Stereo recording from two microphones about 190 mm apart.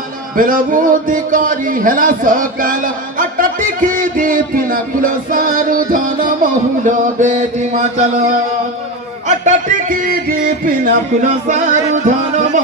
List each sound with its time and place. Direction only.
0.4 s a man's voice: 45° right (ahead or behind)
9.4 s speech: 45° right (ahead or behind)